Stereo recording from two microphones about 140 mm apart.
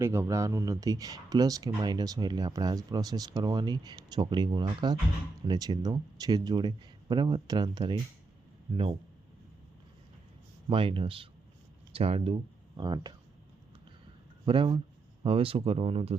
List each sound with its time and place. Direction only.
0.0 s speech: 20° right (ahead or behind)
8.7 s speech: 40° right (ahead or behind)
10.7 s speech: 40° right (ahead or behind)
14.4 s speech: 40° right (ahead or behind)